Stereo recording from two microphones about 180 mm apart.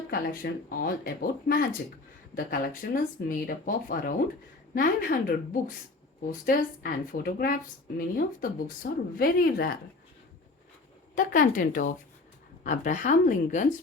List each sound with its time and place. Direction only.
0.1 s a woman's voice: 50° left (ahead or behind)
6.4 s a woman's voice: 50° left (ahead or behind)
11.1 s a woman's voice: 45° left (ahead or behind)